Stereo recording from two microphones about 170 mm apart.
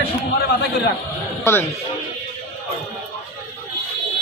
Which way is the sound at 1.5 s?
15° left (ahead or behind).